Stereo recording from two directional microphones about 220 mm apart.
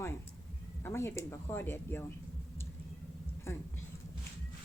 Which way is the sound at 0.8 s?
10° left (ahead or behind).